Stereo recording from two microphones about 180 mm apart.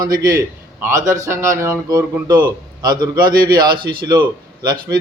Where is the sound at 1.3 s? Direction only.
15° right (ahead or behind).